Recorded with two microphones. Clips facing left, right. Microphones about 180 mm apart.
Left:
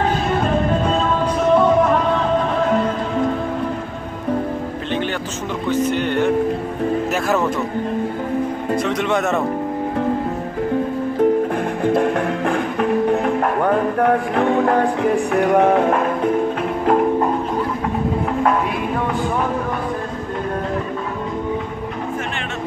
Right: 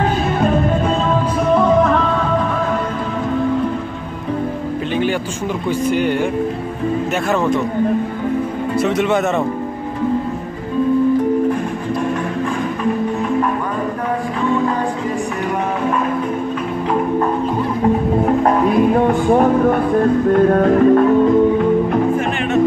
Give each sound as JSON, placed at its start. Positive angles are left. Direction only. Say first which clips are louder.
{"t": 5.8, "sound": "speech", "louder": "right 1 dB", "side_deg": -10}
{"t": 8.7, "sound": "speech", "louder": "right 4 dB", "side_deg": -5}
{"t": 11.9, "sound": "music", "louder": "left 2 dB", "side_deg": 60}
{"t": 18.4, "sound": "music", "louder": "right 5 dB", "side_deg": -45}